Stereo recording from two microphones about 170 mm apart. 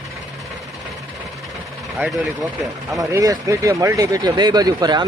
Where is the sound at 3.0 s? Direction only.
20° right (ahead or behind).